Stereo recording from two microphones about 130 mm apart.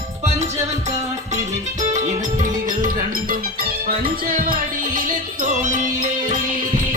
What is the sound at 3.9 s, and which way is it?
Music, 45° right (ahead or behind).